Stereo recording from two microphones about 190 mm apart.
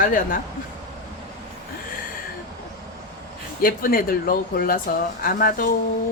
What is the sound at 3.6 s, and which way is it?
Speech, 50° left (ahead or behind).